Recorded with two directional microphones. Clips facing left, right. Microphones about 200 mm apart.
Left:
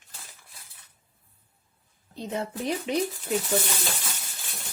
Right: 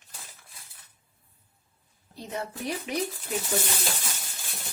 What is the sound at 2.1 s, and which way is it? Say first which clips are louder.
Speech: left 3 dB; 20° left (ahead or behind).